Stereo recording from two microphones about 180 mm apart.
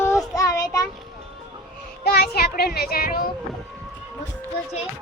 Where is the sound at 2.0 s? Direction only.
60° left (ahead or behind).